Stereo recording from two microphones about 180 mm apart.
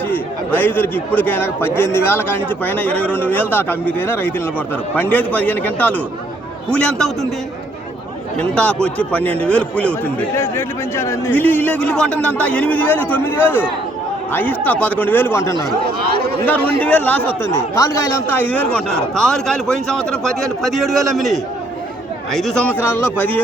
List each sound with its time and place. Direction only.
0.1 s a man's voice: 10° left (ahead or behind)
8.4 s a man's voice: 5° left (ahead or behind)
16.0 s speech: 60° right (ahead or behind)
16.8 s a man's voice: 10° left (ahead or behind)